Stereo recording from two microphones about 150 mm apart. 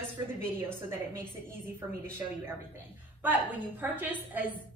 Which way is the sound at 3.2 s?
10° right (ahead or behind).